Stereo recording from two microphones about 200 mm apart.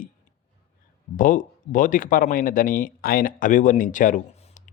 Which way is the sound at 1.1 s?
40° left (ahead or behind).